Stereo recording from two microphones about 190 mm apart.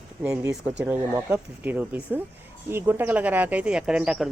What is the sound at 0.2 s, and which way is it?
Speech, 5° right (ahead or behind).